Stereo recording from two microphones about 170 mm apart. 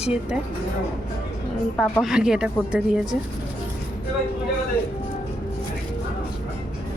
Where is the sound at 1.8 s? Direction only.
Centre (ahead or behind).